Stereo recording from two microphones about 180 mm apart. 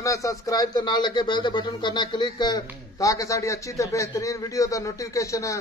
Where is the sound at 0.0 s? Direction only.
15° left (ahead or behind).